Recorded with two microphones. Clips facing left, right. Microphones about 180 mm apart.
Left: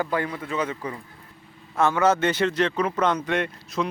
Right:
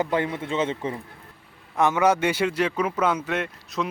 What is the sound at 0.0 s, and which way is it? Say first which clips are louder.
Speech: right 2 dB; 20° right (ahead or behind).